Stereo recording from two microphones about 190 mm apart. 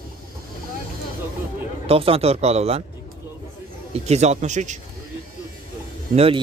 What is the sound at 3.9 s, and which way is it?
Speech, 35° right (ahead or behind).